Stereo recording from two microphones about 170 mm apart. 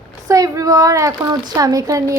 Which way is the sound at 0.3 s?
20° right (ahead or behind).